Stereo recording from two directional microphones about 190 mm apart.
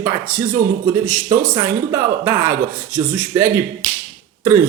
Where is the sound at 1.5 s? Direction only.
15° right (ahead or behind).